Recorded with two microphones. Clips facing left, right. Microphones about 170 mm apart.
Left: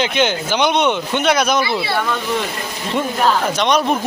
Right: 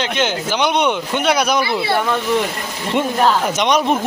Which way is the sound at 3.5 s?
15° right (ahead or behind).